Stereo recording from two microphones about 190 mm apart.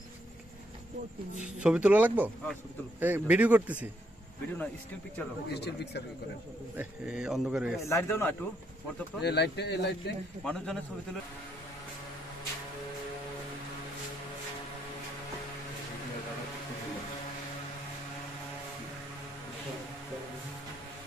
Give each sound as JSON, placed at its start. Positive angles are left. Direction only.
{"t": 1.6, "sound": "speech", "side_deg": -5}
{"t": 5.5, "sound": "a man's voice", "side_deg": 60}
{"t": 6.8, "sound": "a man's voice", "side_deg": -5}
{"t": 7.8, "sound": "a man's voice", "side_deg": 15}
{"t": 9.2, "sound": "a man's voice", "side_deg": 60}
{"t": 10.4, "sound": "a man's voice", "side_deg": 5}